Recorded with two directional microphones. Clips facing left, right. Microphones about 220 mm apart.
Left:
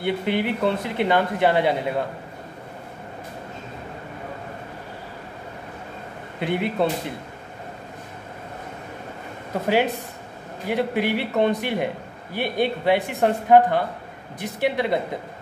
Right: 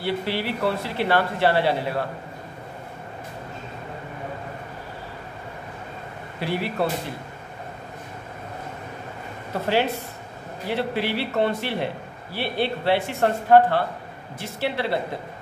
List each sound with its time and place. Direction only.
0.0 s speech: 20° left (ahead or behind)
6.4 s speech: 20° left (ahead or behind)
9.5 s a man's voice: 15° left (ahead or behind)